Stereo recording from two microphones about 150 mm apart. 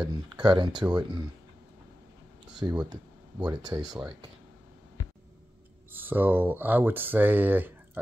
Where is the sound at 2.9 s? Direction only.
25° right (ahead or behind).